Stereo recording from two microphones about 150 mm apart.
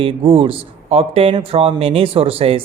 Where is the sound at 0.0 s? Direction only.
35° right (ahead or behind).